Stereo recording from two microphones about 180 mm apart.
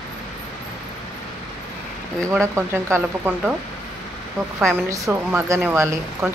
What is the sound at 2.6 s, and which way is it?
Speech, 15° right (ahead or behind).